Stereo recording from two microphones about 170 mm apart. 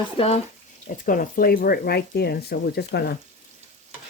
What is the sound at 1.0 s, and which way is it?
Speech, 55° left (ahead or behind).